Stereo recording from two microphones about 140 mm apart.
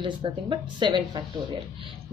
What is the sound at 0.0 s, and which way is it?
Speech, 35° right (ahead or behind).